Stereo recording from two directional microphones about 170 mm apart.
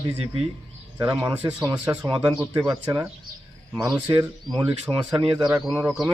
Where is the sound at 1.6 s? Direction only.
20° right (ahead or behind).